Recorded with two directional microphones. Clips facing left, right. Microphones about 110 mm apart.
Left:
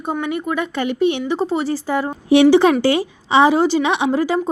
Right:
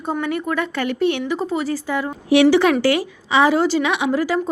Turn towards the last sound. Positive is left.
turn(degrees=25)  # may be behind; listen again after turning